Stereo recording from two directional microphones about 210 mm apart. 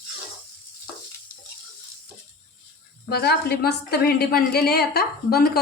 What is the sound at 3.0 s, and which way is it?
A woman's voice, 50° left (ahead or behind).